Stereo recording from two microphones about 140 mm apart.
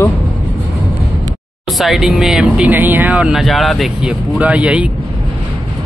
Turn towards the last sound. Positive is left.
turn(degrees=-10)  # may be behind; listen again after turning